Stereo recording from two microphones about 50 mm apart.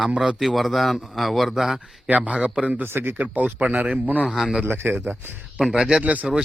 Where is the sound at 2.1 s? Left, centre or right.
Right.